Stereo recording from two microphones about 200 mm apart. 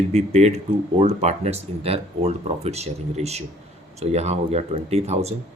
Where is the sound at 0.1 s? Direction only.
35° right (ahead or behind).